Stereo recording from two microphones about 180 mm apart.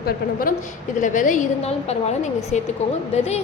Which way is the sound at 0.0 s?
55° left (ahead or behind).